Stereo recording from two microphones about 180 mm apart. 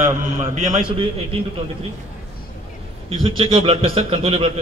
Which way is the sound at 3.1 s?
30° right (ahead or behind).